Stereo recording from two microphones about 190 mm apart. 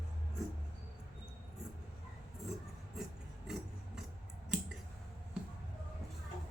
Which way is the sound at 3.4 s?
Centre (ahead or behind).